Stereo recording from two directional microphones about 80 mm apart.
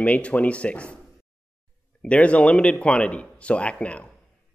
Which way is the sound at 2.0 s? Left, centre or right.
Centre.